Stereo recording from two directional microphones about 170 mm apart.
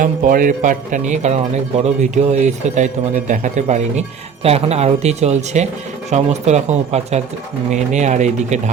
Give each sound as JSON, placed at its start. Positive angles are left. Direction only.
{"t": 0.0, "sound": "speech", "side_deg": -55}